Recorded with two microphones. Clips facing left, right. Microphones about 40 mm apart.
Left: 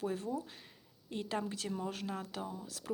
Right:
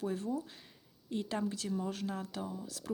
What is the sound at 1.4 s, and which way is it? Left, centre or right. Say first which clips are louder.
Speech: right 3 dB; left.